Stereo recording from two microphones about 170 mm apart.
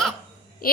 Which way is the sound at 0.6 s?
60° left (ahead or behind).